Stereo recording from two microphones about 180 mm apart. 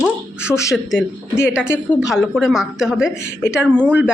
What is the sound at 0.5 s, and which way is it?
Speech, 15° left (ahead or behind).